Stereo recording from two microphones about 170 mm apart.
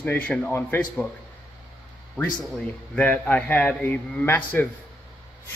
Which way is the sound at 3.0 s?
10° left (ahead or behind).